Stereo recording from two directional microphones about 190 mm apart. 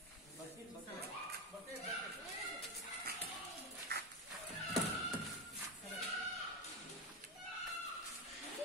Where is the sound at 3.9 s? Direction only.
60° right (ahead or behind).